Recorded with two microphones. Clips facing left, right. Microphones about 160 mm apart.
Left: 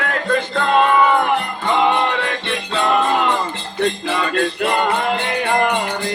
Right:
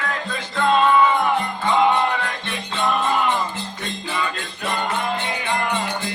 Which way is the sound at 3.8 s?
75° left (ahead or behind).